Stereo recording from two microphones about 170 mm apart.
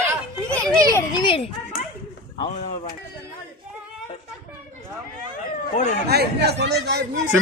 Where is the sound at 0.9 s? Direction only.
25° left (ahead or behind).